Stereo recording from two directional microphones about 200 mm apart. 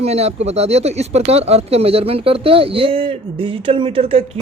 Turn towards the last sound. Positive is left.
turn(degrees=-30)  # may be behind; listen again after turning